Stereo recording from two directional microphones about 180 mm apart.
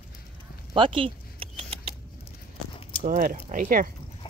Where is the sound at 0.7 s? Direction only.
30° right (ahead or behind).